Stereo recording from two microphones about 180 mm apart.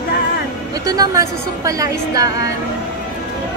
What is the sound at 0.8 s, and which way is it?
A woman's voice, 20° right (ahead or behind).